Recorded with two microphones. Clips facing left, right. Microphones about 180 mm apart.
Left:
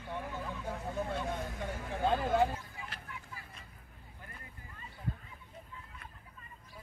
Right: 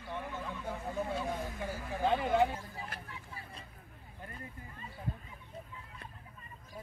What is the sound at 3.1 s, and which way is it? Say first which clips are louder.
Vehicle: right 1 dB; 30° right (ahead or behind).